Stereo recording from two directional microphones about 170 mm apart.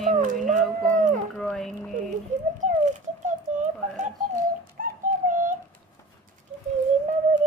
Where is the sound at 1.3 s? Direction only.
Centre (ahead or behind).